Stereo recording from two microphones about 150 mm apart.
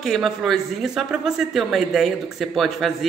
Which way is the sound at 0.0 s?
Centre (ahead or behind).